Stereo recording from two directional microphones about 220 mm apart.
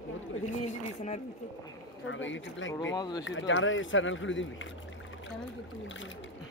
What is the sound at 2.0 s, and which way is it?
Speech, 60° left (ahead or behind).